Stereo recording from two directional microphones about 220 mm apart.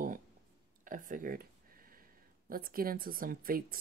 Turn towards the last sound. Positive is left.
turn(degrees=-40)  # may be behind; listen again after turning